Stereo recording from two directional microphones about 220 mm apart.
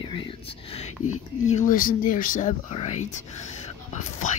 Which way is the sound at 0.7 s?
25° left (ahead or behind).